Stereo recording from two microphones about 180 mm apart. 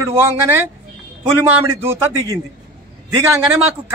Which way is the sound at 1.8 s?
15° right (ahead or behind).